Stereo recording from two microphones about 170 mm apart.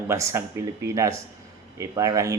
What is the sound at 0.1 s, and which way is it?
Speech, 15° right (ahead or behind).